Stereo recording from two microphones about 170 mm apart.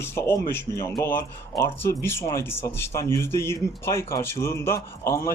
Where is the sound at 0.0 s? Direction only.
15° left (ahead or behind).